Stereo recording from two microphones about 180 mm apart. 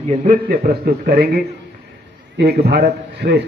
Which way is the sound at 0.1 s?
45° right (ahead or behind).